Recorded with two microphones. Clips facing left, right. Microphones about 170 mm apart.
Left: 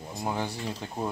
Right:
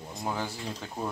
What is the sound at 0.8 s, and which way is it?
Speech, 15° left (ahead or behind).